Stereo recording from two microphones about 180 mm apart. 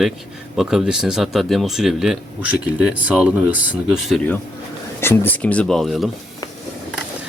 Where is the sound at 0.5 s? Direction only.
Centre (ahead or behind).